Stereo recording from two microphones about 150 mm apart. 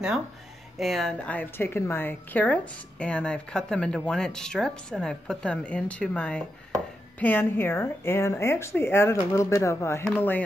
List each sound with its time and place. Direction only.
0.7 s a woman's voice: centre (ahead or behind)